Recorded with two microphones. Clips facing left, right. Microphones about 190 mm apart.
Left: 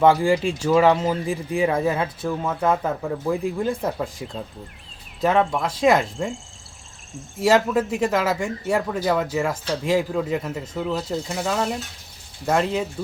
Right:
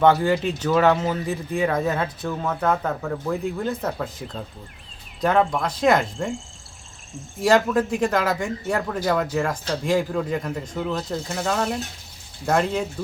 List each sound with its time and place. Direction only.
0.0 s speech: 5° left (ahead or behind)
5.2 s speech: centre (ahead or behind)